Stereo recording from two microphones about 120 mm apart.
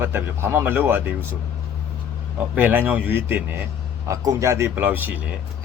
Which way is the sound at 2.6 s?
15° right (ahead or behind).